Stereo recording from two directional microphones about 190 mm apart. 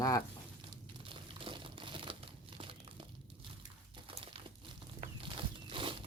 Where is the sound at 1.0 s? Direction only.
25° right (ahead or behind).